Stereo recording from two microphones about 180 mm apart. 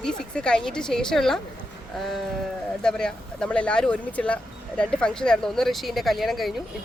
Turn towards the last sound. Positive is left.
turn(degrees=0)  # may be behind; listen again after turning